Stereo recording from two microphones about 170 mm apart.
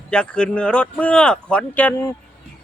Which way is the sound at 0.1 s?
5° left (ahead or behind).